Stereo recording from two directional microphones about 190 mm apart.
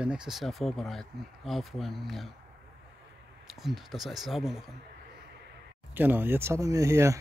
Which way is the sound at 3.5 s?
Centre (ahead or behind).